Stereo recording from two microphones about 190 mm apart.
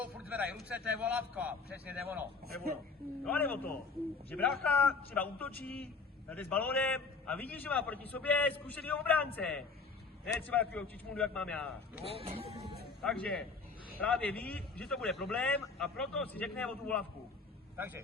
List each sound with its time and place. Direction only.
0.0 s a man's voice: 5° right (ahead or behind)
3.2 s a man's voice: 10° left (ahead or behind)
12.1 s speech: 30° right (ahead or behind)
13.0 s a man's voice: 5° left (ahead or behind)
17.7 s a man's voice: 10° right (ahead or behind)